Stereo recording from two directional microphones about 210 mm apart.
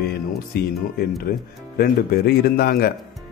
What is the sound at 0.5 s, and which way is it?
Speech, 45° left (ahead or behind).